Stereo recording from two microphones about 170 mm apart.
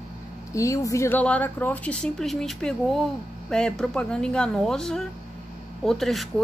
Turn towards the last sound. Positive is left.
turn(degrees=0)  # may be behind; listen again after turning